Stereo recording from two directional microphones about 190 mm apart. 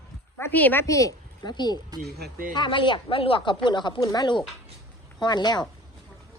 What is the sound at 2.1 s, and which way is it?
Speech, 55° right (ahead or behind).